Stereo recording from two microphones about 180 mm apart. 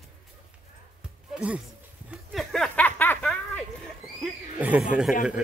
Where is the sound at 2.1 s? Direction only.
Centre (ahead or behind).